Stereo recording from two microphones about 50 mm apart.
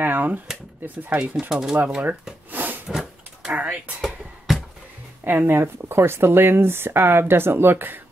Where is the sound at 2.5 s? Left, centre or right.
Right.